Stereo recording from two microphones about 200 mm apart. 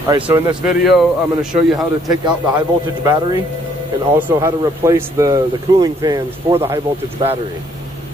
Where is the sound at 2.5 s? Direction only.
20° right (ahead or behind).